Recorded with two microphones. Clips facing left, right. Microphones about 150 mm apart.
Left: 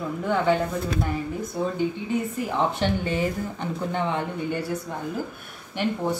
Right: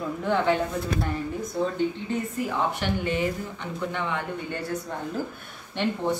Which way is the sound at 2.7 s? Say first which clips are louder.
Left 2 dB; 30° left (ahead or behind).